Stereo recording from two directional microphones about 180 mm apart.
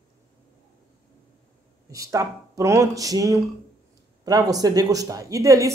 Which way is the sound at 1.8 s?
20° right (ahead or behind).